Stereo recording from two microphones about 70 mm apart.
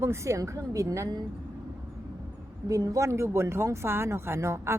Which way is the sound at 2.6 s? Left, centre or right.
Right.